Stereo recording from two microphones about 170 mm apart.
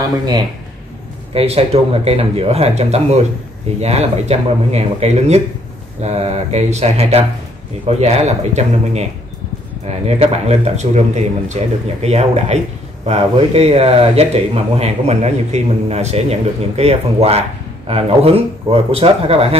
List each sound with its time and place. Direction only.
0.0 s speech: 25° right (ahead or behind)
1.3 s speech: 35° right (ahead or behind)